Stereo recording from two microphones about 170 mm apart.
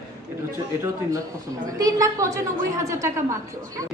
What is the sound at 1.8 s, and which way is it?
A woman's voice, 20° right (ahead or behind).